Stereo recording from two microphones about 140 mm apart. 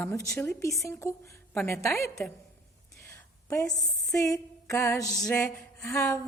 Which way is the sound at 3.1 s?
20° left (ahead or behind).